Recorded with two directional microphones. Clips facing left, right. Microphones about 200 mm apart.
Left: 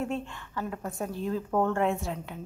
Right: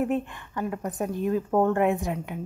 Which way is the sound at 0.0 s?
15° right (ahead or behind).